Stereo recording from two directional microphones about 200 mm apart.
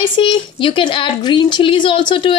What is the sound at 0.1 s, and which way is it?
A woman's voice, 25° left (ahead or behind).